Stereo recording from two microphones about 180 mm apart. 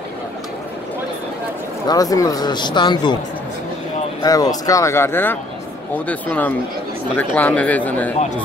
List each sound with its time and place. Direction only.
1.9 s speech: 20° left (ahead or behind)
4.2 s speech: 20° left (ahead or behind)